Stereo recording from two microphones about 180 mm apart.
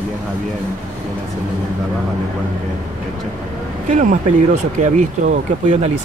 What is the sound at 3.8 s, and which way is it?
Speech, 40° right (ahead or behind).